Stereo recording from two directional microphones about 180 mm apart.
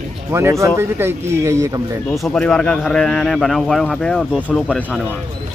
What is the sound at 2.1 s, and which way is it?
Speech, 5° left (ahead or behind).